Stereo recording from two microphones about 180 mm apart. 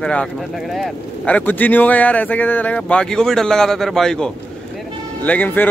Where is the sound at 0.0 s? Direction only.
5° left (ahead or behind).